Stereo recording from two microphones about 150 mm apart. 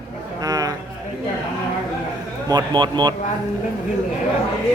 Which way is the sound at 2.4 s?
30° right (ahead or behind).